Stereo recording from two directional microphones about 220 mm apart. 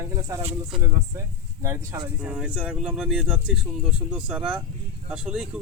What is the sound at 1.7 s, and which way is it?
Speech, 15° right (ahead or behind).